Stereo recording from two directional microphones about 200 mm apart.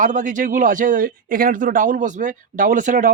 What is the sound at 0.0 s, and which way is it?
Speech, 40° right (ahead or behind).